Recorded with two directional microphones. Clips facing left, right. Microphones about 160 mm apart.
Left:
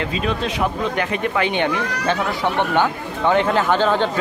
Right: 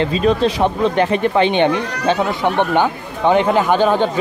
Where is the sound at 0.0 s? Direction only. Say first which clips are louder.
Right 7 dB; 35° right (ahead or behind).